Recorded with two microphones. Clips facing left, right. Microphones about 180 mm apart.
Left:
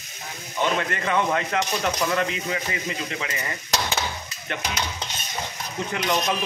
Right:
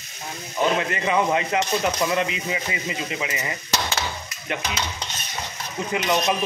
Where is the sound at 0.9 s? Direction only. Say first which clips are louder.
Right 2 dB; 10° right (ahead or behind).